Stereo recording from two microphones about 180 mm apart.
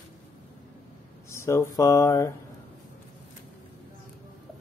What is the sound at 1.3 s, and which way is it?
Speech, 15° left (ahead or behind).